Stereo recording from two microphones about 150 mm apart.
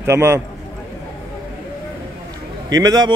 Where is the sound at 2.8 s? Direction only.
25° right (ahead or behind).